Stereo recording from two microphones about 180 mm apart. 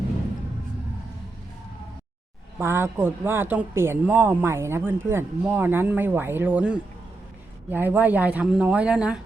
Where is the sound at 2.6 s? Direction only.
15° right (ahead or behind).